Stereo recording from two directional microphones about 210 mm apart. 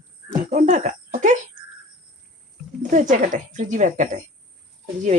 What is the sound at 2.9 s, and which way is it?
Speech, 35° right (ahead or behind).